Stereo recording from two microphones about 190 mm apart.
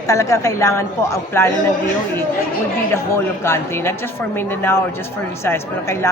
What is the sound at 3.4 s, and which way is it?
A woman's voice, 15° left (ahead or behind).